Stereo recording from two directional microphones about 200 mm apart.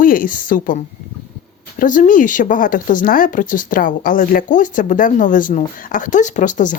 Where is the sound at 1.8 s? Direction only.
40° left (ahead or behind).